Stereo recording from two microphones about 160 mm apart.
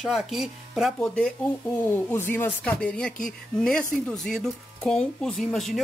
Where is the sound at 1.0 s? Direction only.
5° left (ahead or behind).